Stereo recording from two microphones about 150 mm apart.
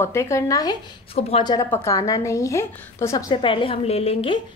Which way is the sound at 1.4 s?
25° left (ahead or behind).